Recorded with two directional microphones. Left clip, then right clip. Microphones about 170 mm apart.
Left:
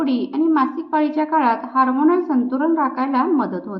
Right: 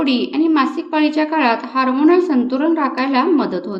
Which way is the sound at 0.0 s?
20° right (ahead or behind).